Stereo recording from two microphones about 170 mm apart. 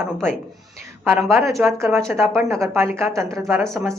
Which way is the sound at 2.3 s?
15° right (ahead or behind).